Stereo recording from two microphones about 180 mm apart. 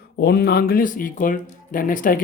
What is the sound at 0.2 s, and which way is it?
Speech, 65° left (ahead or behind).